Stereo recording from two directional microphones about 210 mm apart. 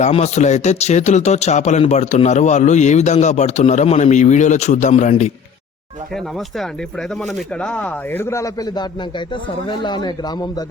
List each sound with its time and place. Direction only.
0.0 s speech: 30° left (ahead or behind)
7.2 s speech: centre (ahead or behind); by 10.5 s 20° left (ahead or behind)